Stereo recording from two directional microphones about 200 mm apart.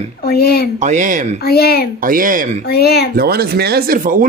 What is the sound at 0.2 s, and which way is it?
Speech, 50° left (ahead or behind).